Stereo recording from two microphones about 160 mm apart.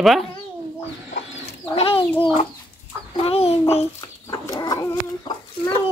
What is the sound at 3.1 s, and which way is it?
Speech, 40° left (ahead or behind).